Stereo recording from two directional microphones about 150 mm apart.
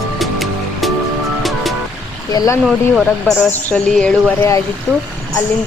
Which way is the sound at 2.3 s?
25° left (ahead or behind).